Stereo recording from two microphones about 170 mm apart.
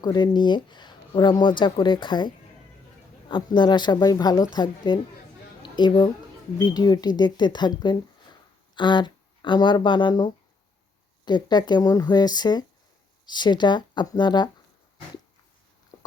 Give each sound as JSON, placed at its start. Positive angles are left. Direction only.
{"t": 0.0, "sound": "a woman's voice", "side_deg": 25}